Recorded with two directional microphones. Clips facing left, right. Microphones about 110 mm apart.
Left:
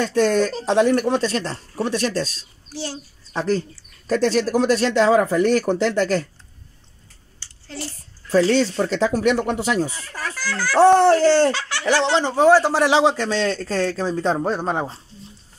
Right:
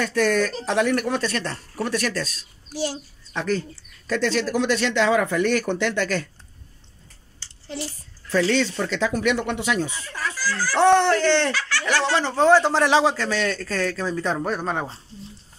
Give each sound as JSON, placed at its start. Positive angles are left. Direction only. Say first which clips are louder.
{"t": 0.0, "sound": "a man's voice", "louder": "left 3 dB", "side_deg": 30}
{"t": 2.7, "sound": "a child's voice", "louder": "right 3 dB", "side_deg": -15}
{"t": 3.3, "sound": "speech", "louder": "left 3 dB", "side_deg": 35}
{"t": 7.7, "sound": "a child's voice", "louder": "right 1 dB", "side_deg": -15}
{"t": 8.3, "sound": "speech", "louder": "left 4 dB", "side_deg": 40}
{"t": 11.0, "sound": "speech", "louder": "left 5 dB", "side_deg": 40}
{"t": 11.9, "sound": "a man's voice", "louder": "left 4 dB", "side_deg": 20}